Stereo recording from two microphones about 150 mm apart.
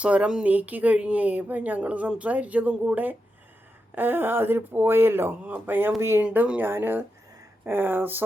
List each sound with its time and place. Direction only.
0.0 s speech: 10° right (ahead or behind)